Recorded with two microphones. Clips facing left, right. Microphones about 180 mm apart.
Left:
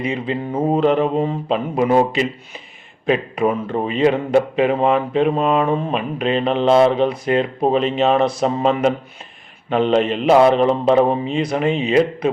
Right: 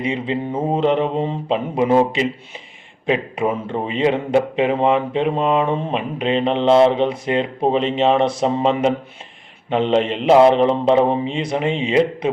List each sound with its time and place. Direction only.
0.0 s speech: 30° right (ahead or behind)